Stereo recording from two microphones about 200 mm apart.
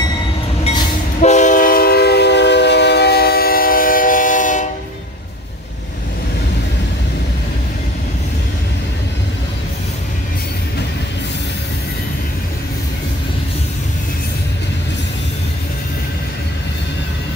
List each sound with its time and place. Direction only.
1.2 s train: 35° left (ahead or behind)